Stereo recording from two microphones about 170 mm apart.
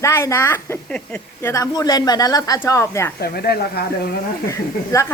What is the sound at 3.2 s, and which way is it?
Speech, 65° left (ahead or behind).